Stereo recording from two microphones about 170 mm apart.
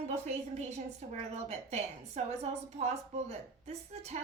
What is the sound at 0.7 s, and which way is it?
A woman's voice, 40° right (ahead or behind).